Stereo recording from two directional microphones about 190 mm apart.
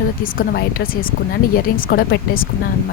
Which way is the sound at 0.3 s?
50° left (ahead or behind).